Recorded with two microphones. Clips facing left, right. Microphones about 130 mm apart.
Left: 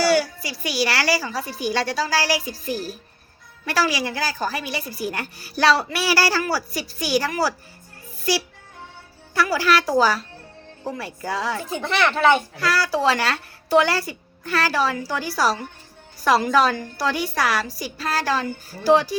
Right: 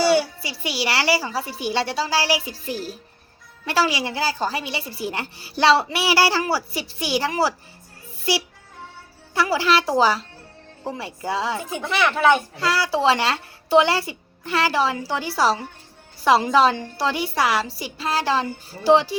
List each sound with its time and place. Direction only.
0.0 s a woman's voice: 25° right (ahead or behind)
12.5 s a woman's voice: 25° right (ahead or behind)